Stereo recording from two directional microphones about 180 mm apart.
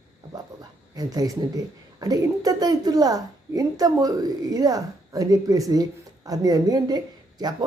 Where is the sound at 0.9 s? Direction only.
20° right (ahead or behind).